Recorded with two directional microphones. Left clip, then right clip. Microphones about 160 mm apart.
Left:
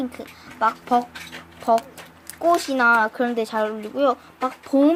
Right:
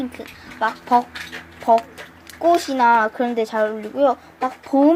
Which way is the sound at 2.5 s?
25° left (ahead or behind).